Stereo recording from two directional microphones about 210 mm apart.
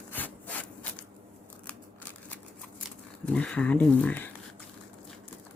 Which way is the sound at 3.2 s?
5° left (ahead or behind).